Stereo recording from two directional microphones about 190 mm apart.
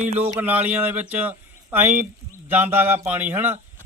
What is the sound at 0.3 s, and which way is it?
Speech, 10° right (ahead or behind).